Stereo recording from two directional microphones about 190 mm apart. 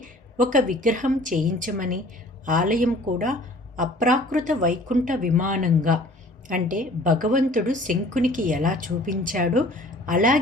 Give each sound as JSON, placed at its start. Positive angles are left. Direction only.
{"t": 0.0, "sound": "a woman's voice", "side_deg": -45}